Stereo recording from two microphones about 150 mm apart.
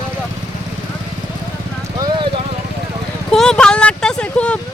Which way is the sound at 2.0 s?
30° right (ahead or behind).